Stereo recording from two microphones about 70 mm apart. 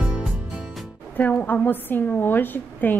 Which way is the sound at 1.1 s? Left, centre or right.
Left.